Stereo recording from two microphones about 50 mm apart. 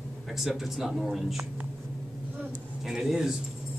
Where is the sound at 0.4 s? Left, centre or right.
Centre.